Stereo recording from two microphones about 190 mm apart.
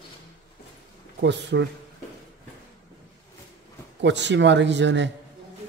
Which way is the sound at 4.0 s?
65° right (ahead or behind).